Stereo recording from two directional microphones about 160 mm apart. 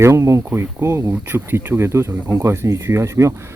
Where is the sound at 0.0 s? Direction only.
20° right (ahead or behind).